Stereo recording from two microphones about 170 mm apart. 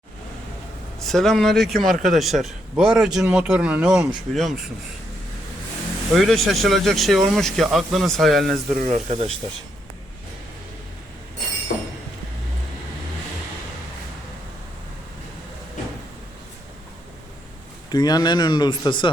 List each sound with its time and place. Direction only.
0.9 s a man's voice: centre (ahead or behind)
6.1 s a man's voice: centre (ahead or behind)
8.7 s speech: 45° right (ahead or behind)
11.7 s a sound: 55° left (ahead or behind)
17.9 s speech: 25° left (ahead or behind)